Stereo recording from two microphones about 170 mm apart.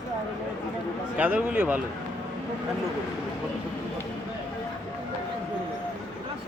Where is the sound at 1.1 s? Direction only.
10° right (ahead or behind).